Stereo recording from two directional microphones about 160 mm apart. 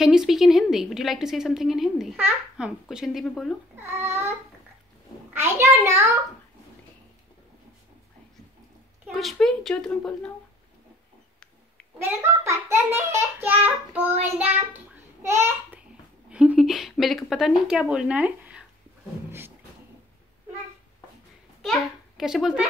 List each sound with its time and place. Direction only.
0.0 s a woman's voice: 5° right (ahead or behind)
3.8 s a child's voice: 15° right (ahead or behind)
9.0 s a woman's voice: centre (ahead or behind)
12.0 s a child's voice: 15° right (ahead or behind)
21.6 s a child's voice: 5° right (ahead or behind)